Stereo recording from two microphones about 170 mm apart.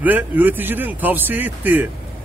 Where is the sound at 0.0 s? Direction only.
10° right (ahead or behind).